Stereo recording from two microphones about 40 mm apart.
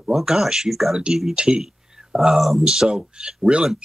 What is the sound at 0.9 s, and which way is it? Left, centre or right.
Speech, centre.